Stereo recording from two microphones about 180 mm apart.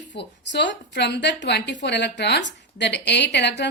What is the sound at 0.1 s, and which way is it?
A woman's voice, 75° left (ahead or behind).